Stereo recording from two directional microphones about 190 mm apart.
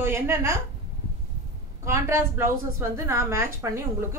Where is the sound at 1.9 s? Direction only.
15° right (ahead or behind).